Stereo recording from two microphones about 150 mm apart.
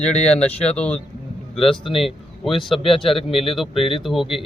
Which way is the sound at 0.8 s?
10° left (ahead or behind).